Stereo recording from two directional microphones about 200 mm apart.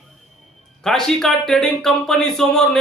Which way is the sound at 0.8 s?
Centre (ahead or behind).